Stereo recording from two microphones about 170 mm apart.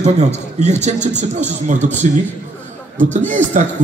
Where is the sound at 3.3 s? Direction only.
45° right (ahead or behind).